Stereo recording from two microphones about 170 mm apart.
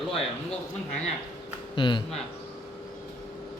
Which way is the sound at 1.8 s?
30° left (ahead or behind).